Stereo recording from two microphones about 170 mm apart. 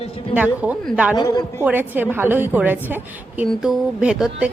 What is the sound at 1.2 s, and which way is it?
Speech, 25° left (ahead or behind).